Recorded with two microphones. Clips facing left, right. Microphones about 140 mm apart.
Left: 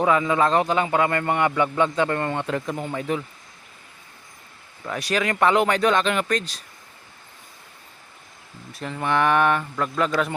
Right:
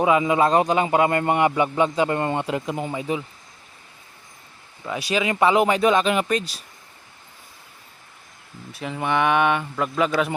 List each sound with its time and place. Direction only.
0.0 s a man's voice: 15° right (ahead or behind)
4.9 s a man's voice: centre (ahead or behind)
8.7 s speech: 5° right (ahead or behind)